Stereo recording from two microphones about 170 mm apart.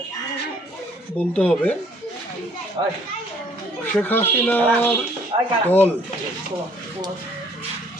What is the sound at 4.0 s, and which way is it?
Speech, 10° left (ahead or behind).